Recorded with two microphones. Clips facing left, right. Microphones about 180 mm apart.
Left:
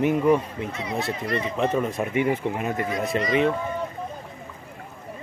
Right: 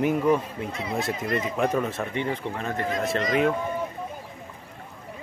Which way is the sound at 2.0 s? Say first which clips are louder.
Left 5 dB; 15° left (ahead or behind).